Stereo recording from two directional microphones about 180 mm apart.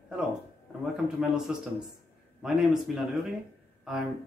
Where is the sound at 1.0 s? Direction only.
5° right (ahead or behind).